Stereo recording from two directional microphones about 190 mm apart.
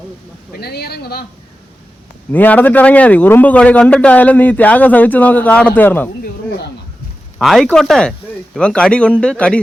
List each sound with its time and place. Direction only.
0.5 s speech: 55° left (ahead or behind)
2.3 s a man's voice: 10° left (ahead or behind)
7.3 s a man's voice: centre (ahead or behind)